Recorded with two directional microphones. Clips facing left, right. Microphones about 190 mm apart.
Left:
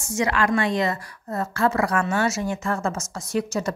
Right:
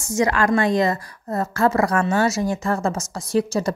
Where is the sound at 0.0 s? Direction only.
40° right (ahead or behind).